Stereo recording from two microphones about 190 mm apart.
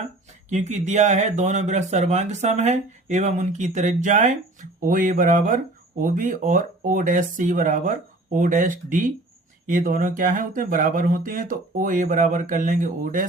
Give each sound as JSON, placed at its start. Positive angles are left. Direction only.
{"t": 0.5, "sound": "speech", "side_deg": -35}